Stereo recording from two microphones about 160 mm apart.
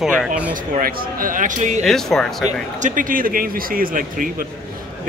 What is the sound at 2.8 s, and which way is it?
Speech, 55° right (ahead or behind).